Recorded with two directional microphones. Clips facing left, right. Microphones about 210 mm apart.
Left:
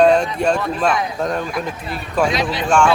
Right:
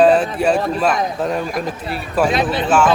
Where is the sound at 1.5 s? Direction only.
40° right (ahead or behind).